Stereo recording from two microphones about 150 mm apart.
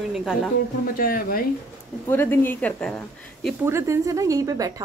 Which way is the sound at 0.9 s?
75° left (ahead or behind).